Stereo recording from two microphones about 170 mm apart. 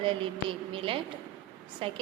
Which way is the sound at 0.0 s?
30° right (ahead or behind).